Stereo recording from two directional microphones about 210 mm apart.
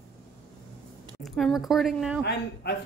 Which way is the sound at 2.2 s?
50° left (ahead or behind).